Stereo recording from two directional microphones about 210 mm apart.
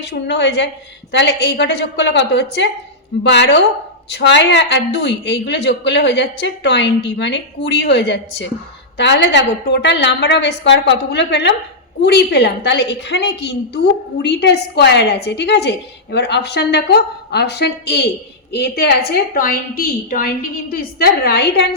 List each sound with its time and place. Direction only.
0.0 s a woman's voice: 55° left (ahead or behind)